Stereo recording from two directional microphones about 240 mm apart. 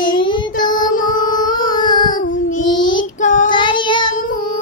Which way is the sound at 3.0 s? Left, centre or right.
Left.